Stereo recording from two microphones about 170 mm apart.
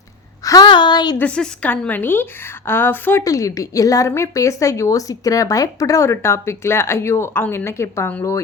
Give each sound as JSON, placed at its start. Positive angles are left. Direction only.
{"t": 0.4, "sound": "a woman's voice", "side_deg": 25}
{"t": 1.2, "sound": "a woman's voice", "side_deg": 10}